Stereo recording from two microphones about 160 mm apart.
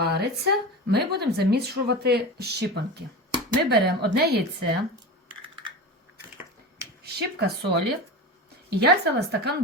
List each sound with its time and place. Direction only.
0.0 s speech: 85° right
7.0 s a woman's voice: 85° right